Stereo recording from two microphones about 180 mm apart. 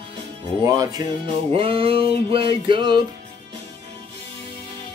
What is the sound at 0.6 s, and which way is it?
Music, 20° right (ahead or behind).